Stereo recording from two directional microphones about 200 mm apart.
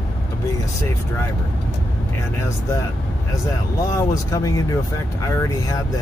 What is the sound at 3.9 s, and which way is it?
Speech, 15° left (ahead or behind).